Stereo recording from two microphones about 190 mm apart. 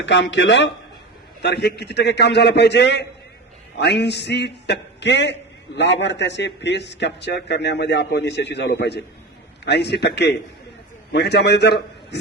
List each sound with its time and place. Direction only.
0.0 s a man's voice: 70° left (ahead or behind)